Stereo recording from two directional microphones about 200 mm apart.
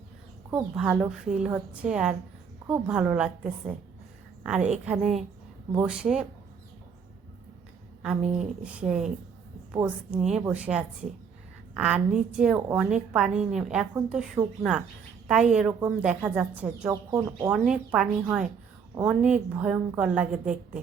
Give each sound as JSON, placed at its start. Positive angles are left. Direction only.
{"t": 0.8, "sound": "a woman's voice", "side_deg": -5}
{"t": 8.0, "sound": "a woman's voice", "side_deg": -5}
{"t": 16.9, "sound": "a woman's voice", "side_deg": -15}
{"t": 17.5, "sound": "a woman's voice", "side_deg": -5}